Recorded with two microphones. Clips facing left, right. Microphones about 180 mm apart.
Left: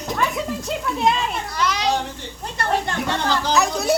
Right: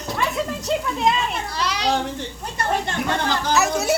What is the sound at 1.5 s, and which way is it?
Children playing, 30° right (ahead or behind).